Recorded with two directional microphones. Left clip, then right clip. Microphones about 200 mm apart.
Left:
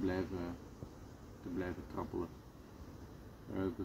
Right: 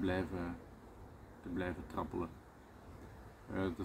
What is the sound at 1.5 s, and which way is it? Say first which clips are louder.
Speech: right 2 dB; 5° right (ahead or behind).